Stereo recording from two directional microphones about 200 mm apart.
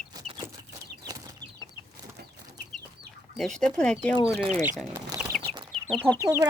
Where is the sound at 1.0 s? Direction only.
55° right (ahead or behind).